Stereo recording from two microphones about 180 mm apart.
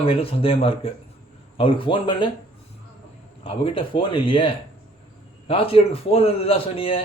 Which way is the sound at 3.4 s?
30° left (ahead or behind).